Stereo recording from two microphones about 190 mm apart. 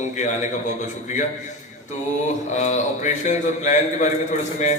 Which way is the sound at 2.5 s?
35° left (ahead or behind).